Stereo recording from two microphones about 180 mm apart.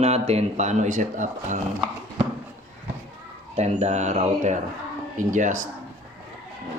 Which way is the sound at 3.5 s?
40° right (ahead or behind).